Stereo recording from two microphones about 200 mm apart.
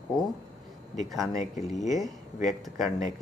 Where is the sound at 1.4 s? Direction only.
35° left (ahead or behind).